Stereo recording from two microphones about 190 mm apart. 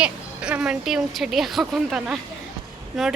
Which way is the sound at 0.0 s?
5° right (ahead or behind).